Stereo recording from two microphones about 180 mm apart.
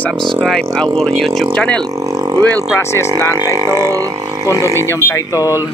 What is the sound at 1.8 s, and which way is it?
Vehicle, 20° right (ahead or behind).